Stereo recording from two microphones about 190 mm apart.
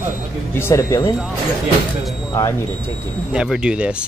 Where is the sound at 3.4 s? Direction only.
5° right (ahead or behind).